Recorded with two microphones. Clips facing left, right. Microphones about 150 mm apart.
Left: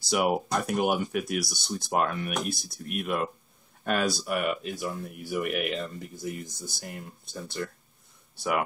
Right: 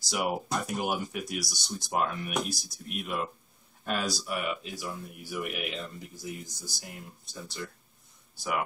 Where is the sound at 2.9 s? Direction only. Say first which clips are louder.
Left 4 dB; 55° left (ahead or behind).